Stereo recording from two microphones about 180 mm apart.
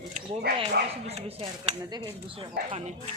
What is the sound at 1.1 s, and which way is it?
Speech, 35° right (ahead or behind).